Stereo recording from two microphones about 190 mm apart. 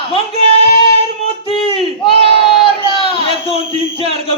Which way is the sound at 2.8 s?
30° left (ahead or behind).